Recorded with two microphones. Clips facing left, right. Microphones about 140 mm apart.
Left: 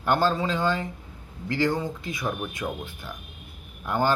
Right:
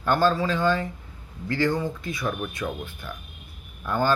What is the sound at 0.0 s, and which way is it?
Speech, 20° left (ahead or behind).